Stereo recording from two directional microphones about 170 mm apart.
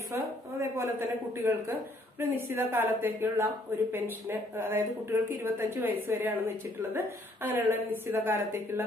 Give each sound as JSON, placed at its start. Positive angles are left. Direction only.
{"t": 0.1, "sound": "a woman's voice", "side_deg": -15}